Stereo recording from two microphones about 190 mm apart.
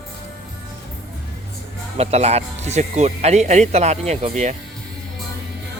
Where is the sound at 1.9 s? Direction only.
35° right (ahead or behind).